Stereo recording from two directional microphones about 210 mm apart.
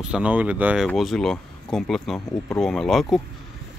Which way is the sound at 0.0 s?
5° right (ahead or behind).